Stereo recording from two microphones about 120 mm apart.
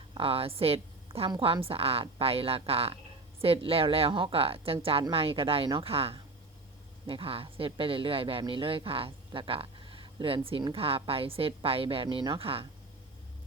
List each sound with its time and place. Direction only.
0.1 s a woman's voice: 50° right (ahead or behind)